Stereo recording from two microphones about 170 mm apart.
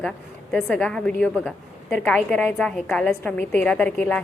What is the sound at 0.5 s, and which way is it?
A woman's voice, 5° left (ahead or behind).